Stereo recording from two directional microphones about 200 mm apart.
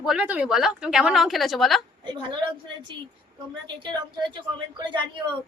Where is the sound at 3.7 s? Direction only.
25° right (ahead or behind).